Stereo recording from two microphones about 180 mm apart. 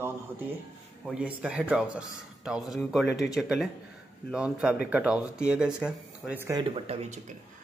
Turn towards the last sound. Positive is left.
turn(degrees=-35)  # may be behind; listen again after turning